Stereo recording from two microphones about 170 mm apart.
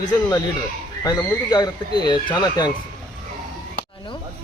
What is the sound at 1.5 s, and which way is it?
Speech, 25° left (ahead or behind).